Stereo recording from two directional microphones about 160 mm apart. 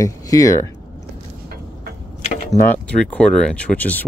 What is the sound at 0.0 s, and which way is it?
Speech, 20° left (ahead or behind).